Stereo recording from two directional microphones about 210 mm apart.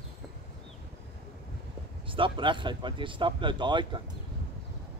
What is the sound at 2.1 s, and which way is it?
Speech, 25° right (ahead or behind).